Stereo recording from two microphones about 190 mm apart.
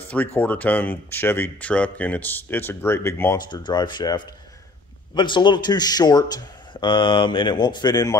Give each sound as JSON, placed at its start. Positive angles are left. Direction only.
{"t": 0.4, "sound": "speech", "side_deg": 10}